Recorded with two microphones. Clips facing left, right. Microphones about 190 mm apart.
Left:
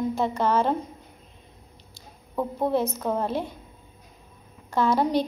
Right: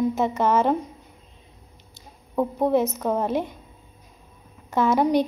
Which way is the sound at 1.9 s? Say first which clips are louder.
Right 5 dB; 20° right (ahead or behind).